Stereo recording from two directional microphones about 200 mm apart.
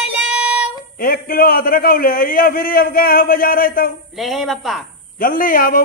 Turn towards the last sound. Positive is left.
turn(degrees=45)  # may be behind; listen again after turning